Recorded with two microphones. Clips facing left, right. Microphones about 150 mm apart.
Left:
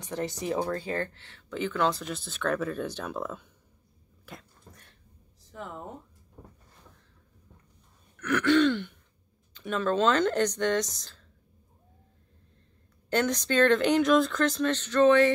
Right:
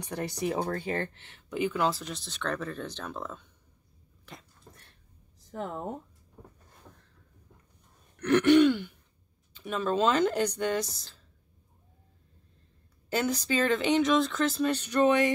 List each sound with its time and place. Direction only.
0.0 s speech: 15° right (ahead or behind); by 4.4 s 5° left (ahead or behind)
5.5 s speech: 40° right (ahead or behind)
8.2 s throat clearing: 25° right (ahead or behind)
8.5 s throat clearing: 10° right (ahead or behind)
9.5 s speech: 5° right (ahead or behind)
13.1 s speech: 5° right (ahead or behind)